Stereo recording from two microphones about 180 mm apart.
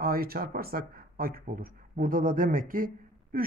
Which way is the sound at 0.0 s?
55° right (ahead or behind).